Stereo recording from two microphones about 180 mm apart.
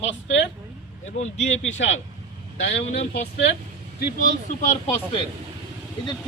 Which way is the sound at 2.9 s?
35° left (ahead or behind).